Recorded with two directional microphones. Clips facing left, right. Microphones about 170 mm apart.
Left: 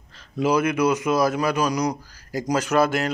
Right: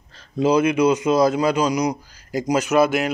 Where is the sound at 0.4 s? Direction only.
25° right (ahead or behind).